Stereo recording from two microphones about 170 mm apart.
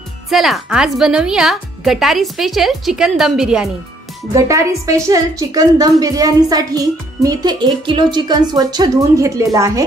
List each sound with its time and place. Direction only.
0.3 s a woman's voice: centre (ahead or behind)
4.3 s a woman's voice: 20° right (ahead or behind)